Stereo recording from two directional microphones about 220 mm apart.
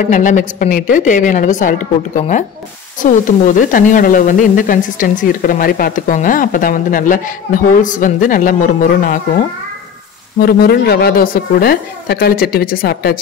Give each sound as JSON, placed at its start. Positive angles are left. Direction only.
{"t": 0.0, "sound": "speech", "side_deg": 35}
{"t": 10.4, "sound": "a woman's voice", "side_deg": 45}